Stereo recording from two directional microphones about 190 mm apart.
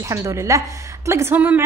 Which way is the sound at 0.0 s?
15° right (ahead or behind).